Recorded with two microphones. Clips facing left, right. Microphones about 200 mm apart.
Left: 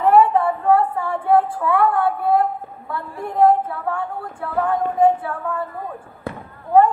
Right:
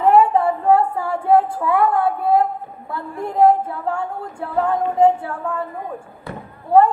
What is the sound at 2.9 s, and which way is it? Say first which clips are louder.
Female singing: right 1 dB; 25° right (ahead or behind).